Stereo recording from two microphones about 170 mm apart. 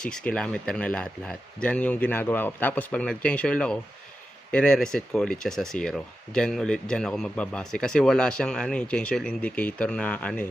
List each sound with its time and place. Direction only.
0.0 s speech: 5° left (ahead or behind)